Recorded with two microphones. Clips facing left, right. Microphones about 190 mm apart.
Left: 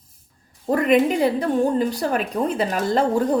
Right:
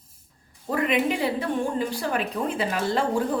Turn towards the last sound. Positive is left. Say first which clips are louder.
# left 4 dB
turn(degrees=40)  # may be behind; listen again after turning